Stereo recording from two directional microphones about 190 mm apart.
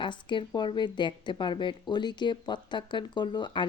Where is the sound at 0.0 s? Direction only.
25° left (ahead or behind).